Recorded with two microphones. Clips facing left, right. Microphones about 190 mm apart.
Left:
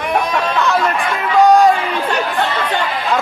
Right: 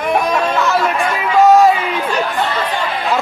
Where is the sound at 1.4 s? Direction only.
5° right (ahead or behind).